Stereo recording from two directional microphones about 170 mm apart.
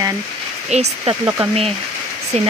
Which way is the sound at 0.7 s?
40° right (ahead or behind).